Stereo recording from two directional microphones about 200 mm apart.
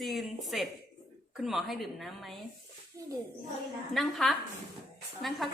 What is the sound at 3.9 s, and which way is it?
Speech, centre (ahead or behind).